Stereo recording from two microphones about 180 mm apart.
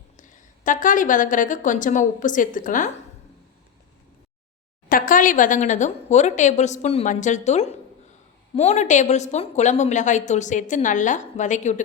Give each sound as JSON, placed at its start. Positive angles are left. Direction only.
{"t": 0.2, "sound": "a woman's voice", "side_deg": 45}
{"t": 4.9, "sound": "a woman's voice", "side_deg": 50}